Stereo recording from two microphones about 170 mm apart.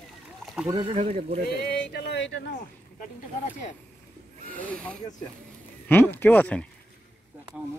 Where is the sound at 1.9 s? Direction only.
90° left.